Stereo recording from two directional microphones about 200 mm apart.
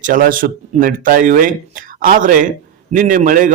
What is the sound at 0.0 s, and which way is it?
A man's voice, 45° right (ahead or behind).